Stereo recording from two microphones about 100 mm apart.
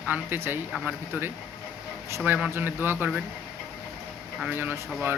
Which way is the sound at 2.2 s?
15° right (ahead or behind).